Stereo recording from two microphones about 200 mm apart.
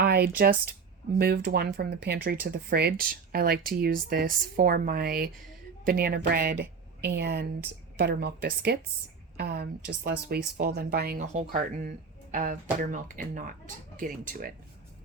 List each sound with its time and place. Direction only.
0.0 s speech: 55° right (ahead or behind)